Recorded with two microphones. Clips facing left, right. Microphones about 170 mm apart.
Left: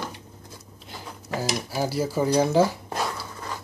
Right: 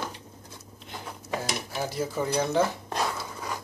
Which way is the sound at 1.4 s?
5° left (ahead or behind).